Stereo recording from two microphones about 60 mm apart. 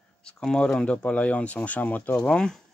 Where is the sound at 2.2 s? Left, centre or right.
Centre.